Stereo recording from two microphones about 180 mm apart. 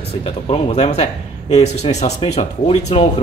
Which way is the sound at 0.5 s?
35° left (ahead or behind).